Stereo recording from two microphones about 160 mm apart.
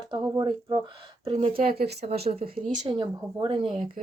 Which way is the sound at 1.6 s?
70° right (ahead or behind).